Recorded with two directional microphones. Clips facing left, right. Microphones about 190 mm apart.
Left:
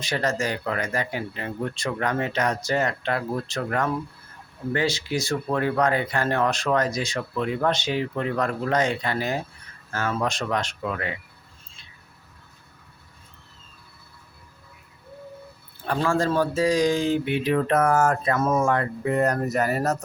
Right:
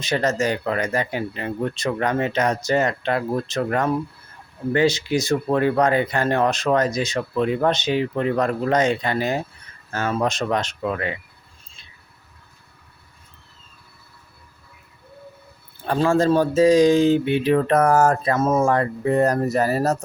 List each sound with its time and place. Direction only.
0.0 s speech: 20° right (ahead or behind)
15.9 s speech: 25° right (ahead or behind)
18.3 s speech: 25° right (ahead or behind)